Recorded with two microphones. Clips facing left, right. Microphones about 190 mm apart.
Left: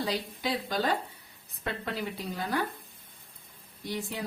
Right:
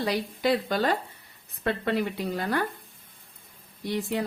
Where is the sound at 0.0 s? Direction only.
65° right (ahead or behind).